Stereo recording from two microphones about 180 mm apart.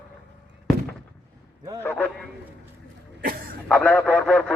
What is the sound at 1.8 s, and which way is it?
Speech, 10° left (ahead or behind).